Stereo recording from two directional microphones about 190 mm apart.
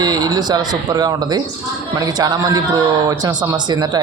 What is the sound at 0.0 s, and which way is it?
A man's voice, 20° right (ahead or behind).